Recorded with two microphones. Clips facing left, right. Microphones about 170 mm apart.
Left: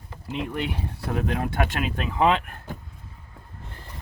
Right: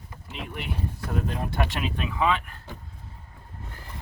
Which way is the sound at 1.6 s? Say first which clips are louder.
Left 2 dB; 50° left (ahead or behind).